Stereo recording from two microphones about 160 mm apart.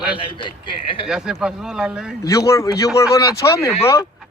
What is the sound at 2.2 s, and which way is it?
Speech, 20° left (ahead or behind).